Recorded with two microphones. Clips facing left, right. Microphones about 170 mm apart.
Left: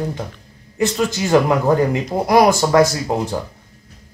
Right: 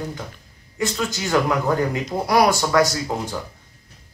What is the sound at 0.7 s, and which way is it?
Speech, 25° left (ahead or behind).